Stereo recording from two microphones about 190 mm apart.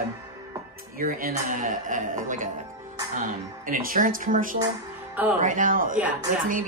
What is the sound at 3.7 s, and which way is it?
Speech, 45° right (ahead or behind).